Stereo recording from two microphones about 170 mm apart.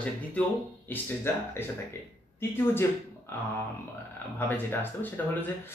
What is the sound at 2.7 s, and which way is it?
Speech, 15° left (ahead or behind).